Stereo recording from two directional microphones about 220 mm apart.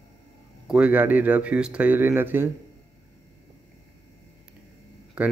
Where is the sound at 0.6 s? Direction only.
5° right (ahead or behind).